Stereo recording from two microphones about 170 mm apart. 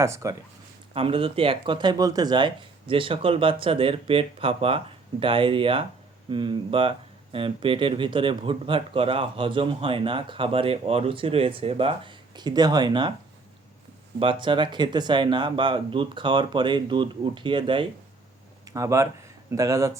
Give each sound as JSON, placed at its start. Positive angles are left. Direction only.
{"t": 0.0, "sound": "speech", "side_deg": -20}
{"t": 0.9, "sound": "speech", "side_deg": -35}
{"t": 14.2, "sound": "speech", "side_deg": -30}
{"t": 18.7, "sound": "speech", "side_deg": -20}